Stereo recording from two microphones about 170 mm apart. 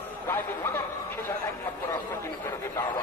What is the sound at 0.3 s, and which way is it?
Speech, 15° left (ahead or behind).